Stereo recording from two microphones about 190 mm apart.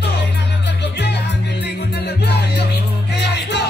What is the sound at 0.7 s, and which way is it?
Music, 65° left (ahead or behind).